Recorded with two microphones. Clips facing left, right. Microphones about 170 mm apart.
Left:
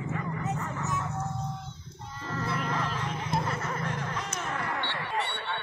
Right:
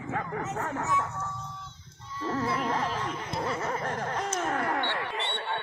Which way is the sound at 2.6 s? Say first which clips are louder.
Right 2 dB; 45° right (ahead or behind).